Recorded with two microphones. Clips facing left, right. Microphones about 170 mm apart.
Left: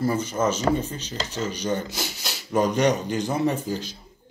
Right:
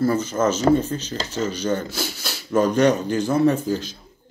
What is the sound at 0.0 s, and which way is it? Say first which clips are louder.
Speech: right 3 dB; 10° left (ahead or behind).